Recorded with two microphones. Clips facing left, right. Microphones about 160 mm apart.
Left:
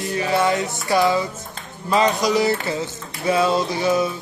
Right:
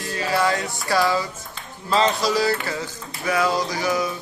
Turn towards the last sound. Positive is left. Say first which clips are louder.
# left 4 dB
turn(degrees=25)  # may be behind; listen again after turning